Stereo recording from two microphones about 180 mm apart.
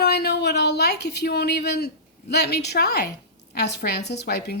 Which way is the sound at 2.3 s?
65° left (ahead or behind).